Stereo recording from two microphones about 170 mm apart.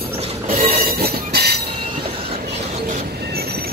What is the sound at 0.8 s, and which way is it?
Train, 65° right (ahead or behind).